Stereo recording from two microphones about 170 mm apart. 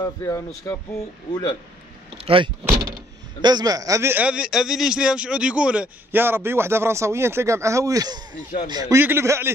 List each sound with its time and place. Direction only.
0.0 s speech: 20° left (ahead or behind)
2.1 s speech: 30° right (ahead or behind); by 9.5 s 15° right (ahead or behind)